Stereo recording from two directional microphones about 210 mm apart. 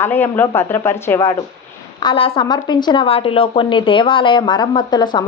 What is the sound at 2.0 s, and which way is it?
Speech, 25° left (ahead or behind).